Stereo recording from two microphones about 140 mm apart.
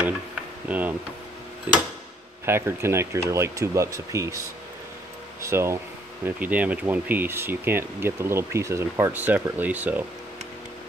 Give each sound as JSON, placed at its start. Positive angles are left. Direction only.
{"t": 0.7, "sound": "speech", "side_deg": -10}
{"t": 2.4, "sound": "speech", "side_deg": -15}
{"t": 5.4, "sound": "speech", "side_deg": -20}